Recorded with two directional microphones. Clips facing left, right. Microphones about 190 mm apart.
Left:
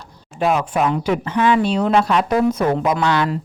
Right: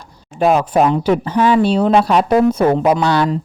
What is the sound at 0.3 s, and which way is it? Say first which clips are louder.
Speech: right 5 dB; 40° right (ahead or behind).